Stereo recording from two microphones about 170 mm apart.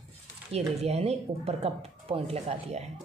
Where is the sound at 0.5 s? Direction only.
40° right (ahead or behind).